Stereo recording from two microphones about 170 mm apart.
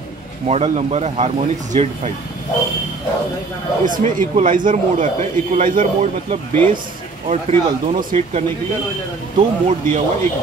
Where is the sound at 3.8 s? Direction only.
50° right (ahead or behind).